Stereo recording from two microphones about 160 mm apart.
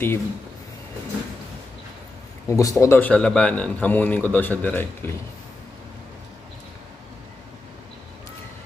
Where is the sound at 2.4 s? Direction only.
20° left (ahead or behind).